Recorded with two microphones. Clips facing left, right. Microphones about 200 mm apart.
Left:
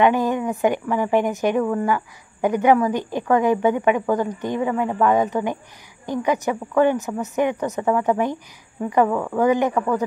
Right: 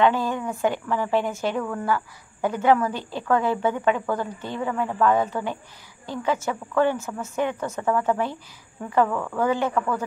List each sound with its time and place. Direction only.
0.0 s a woman's voice: 15° left (ahead or behind)